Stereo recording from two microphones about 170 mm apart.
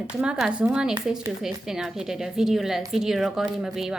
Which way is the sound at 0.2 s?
5° right (ahead or behind).